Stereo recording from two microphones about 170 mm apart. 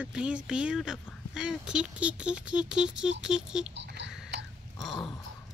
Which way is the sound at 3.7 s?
85° right.